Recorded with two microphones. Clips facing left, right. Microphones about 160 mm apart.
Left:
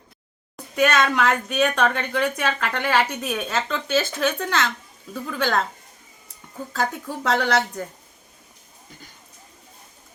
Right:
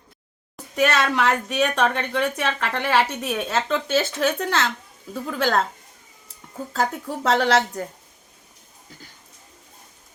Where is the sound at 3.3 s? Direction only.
25° right (ahead or behind).